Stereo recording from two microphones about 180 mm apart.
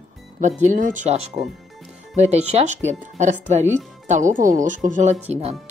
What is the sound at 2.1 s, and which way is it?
Speech, 40° right (ahead or behind).